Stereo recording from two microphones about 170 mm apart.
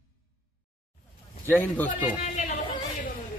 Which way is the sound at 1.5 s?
10° left (ahead or behind).